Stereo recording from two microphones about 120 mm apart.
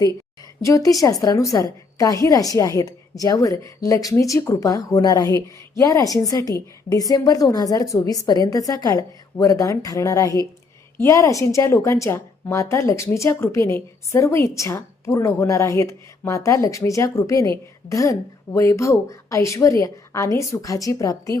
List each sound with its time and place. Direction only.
0.6 s a woman's voice: 30° left (ahead or behind)